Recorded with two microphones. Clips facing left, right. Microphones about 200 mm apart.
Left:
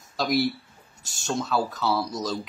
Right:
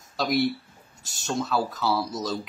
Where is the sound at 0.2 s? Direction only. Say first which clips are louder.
Even; centre (ahead or behind).